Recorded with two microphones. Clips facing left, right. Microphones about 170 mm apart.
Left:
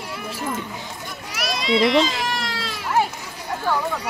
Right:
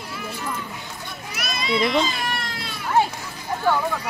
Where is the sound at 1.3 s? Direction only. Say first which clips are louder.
Left 3 dB; 90° left.